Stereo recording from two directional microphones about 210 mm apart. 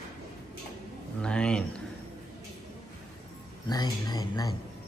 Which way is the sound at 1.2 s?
5° left (ahead or behind).